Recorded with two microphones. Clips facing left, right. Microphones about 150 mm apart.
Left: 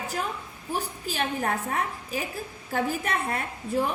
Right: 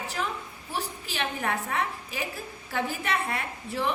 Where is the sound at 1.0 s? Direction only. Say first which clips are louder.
Left 3 dB; 40° left (ahead or behind).